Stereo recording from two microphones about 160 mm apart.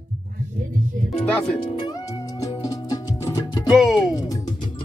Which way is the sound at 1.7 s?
25° left (ahead or behind).